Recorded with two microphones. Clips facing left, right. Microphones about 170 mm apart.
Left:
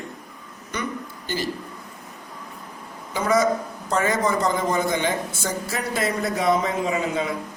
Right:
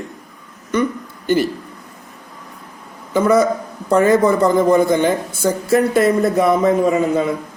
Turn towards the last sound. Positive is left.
turn(degrees=-50)  # may be behind; listen again after turning